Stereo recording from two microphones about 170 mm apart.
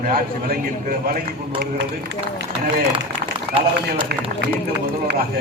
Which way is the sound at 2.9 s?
30° right (ahead or behind).